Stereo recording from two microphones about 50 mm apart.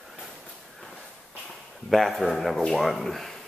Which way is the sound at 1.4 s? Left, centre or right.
Centre.